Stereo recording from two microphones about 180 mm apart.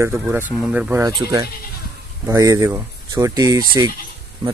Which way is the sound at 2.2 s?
20° right (ahead or behind).